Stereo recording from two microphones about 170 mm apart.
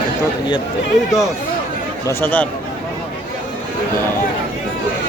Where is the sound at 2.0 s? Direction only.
10° left (ahead or behind).